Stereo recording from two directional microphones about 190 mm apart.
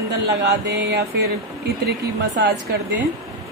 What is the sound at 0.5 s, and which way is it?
Speech, 65° right (ahead or behind).